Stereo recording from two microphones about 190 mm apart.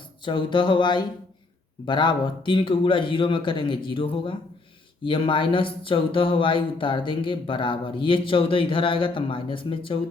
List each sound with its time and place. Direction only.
0.3 s speech: 25° left (ahead or behind)